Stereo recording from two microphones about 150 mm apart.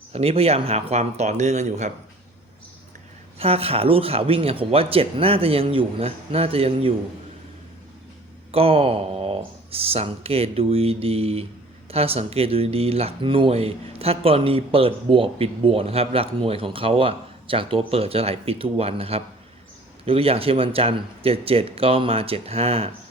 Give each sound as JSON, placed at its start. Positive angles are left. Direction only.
{"t": 0.1, "sound": "speech", "side_deg": -40}
{"t": 3.3, "sound": "speech", "side_deg": -40}
{"t": 8.5, "sound": "speech", "side_deg": -40}